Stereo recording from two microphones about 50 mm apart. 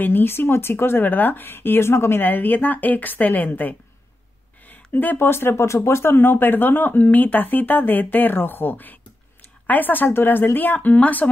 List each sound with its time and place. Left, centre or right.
0.0 s speech: left
4.6 s a sound: left
5.1 s speech: left